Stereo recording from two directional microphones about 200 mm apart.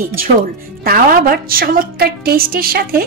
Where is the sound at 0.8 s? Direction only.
45° right (ahead or behind).